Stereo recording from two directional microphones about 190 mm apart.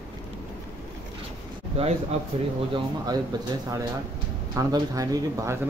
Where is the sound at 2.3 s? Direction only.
30° right (ahead or behind).